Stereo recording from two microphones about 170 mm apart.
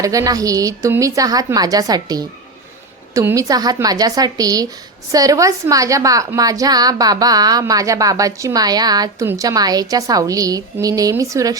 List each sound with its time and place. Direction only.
0.0 s a woman's voice: 20° right (ahead or behind)